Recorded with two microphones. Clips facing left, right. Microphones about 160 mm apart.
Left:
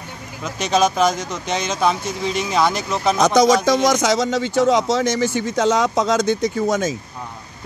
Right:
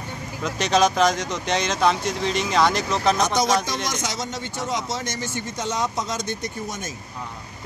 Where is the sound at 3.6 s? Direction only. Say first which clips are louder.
Left 12 dB; 90° left.